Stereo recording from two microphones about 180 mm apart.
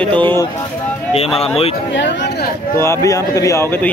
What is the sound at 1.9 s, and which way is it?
Chatter, 80° left.